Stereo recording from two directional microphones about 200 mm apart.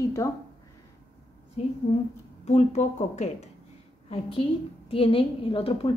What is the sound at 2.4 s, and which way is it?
A woman's voice, 35° left (ahead or behind).